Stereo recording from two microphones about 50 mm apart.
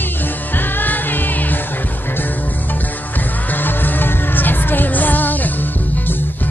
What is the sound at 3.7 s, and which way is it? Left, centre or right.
Music, left.